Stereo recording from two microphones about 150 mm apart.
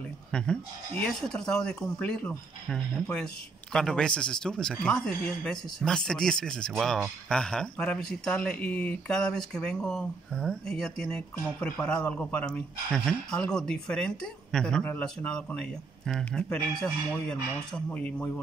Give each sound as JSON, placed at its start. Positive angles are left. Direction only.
{"t": 0.3, "sound": "speech", "side_deg": 5}